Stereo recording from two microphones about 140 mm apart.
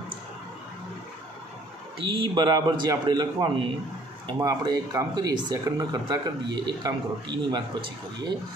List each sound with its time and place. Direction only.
2.0 s a man's voice: 35° right (ahead or behind)